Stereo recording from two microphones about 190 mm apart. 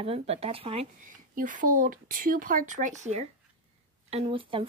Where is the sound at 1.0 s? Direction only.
45° right (ahead or behind).